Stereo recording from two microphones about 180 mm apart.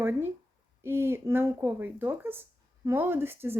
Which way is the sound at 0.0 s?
10° right (ahead or behind).